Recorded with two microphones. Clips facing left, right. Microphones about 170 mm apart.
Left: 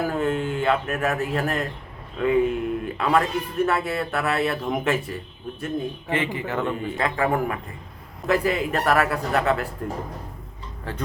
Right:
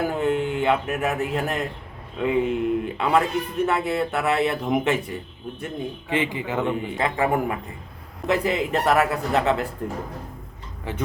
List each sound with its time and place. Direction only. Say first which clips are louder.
0.0 s a man's voice: right 1 dB; 20° right (ahead or behind)